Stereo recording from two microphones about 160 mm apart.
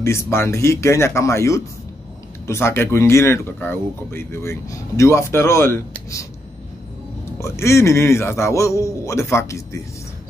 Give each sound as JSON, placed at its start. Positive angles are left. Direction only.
{"t": 0.0, "sound": "speech", "side_deg": 15}
{"t": 7.3, "sound": "speech", "side_deg": 15}